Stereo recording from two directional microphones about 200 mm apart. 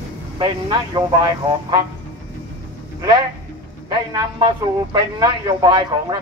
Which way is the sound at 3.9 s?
20° right (ahead or behind).